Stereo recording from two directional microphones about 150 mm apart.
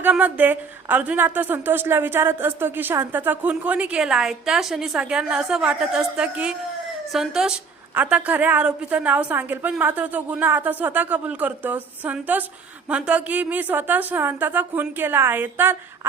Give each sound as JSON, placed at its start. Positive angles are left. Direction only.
{"t": 0.0, "sound": "a woman's voice", "side_deg": -10}